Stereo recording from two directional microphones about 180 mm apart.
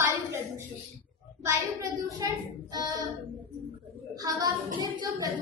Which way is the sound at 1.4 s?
20° right (ahead or behind).